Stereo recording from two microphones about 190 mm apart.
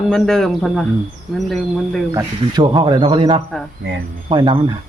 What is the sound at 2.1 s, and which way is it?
A man's voice, 20° right (ahead or behind).